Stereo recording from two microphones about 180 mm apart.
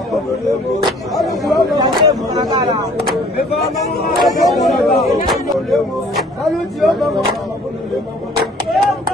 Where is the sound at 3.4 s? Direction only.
60° left (ahead or behind).